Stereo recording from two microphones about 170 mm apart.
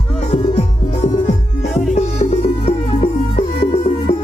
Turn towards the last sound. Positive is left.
turn(degrees=40)  # may be behind; listen again after turning